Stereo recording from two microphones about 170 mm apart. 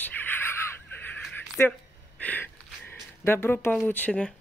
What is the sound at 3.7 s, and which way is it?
Speech, 10° left (ahead or behind).